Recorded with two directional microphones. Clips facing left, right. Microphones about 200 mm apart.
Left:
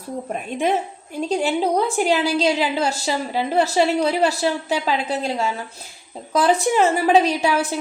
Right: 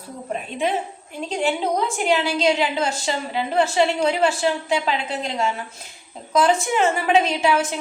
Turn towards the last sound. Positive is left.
turn(degrees=35)  # may be behind; listen again after turning